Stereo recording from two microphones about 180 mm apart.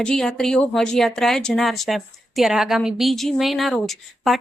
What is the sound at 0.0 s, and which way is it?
Speech, 5° left (ahead or behind).